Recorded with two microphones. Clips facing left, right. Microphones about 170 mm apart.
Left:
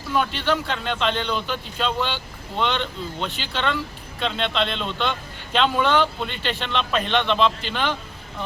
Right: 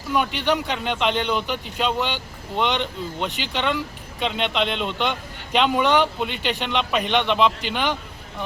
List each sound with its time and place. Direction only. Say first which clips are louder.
0.1 s speech: right 1 dB; 15° right (ahead or behind)